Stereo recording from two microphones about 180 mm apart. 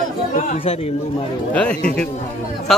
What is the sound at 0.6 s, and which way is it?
Speech, 35° left (ahead or behind).